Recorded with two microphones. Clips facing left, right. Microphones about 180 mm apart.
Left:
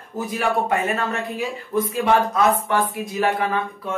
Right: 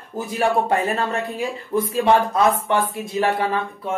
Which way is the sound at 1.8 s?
30° right (ahead or behind).